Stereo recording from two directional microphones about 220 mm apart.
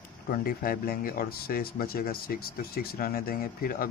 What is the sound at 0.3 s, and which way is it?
Speech, 40° left (ahead or behind).